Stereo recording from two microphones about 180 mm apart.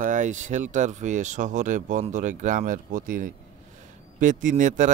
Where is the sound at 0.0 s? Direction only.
45° right (ahead or behind).